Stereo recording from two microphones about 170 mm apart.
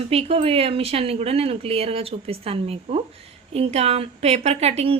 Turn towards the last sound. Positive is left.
turn(degrees=-35)  # may be behind; listen again after turning